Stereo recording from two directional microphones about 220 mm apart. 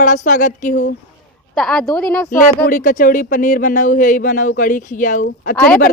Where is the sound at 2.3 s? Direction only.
40° left (ahead or behind).